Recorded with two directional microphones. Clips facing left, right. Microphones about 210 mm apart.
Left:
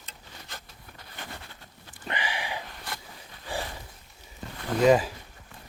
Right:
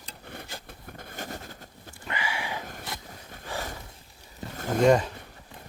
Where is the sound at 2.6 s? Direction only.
45° right (ahead or behind).